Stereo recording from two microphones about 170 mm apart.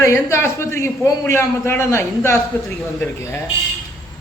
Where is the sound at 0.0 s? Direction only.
15° left (ahead or behind).